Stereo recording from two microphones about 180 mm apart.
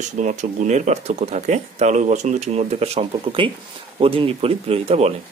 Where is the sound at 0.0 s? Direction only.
40° right (ahead or behind).